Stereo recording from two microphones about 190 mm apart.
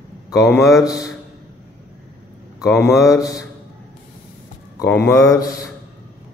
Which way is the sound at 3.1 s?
20° left (ahead or behind).